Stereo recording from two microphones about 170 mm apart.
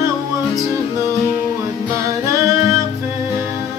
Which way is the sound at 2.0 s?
20° right (ahead or behind).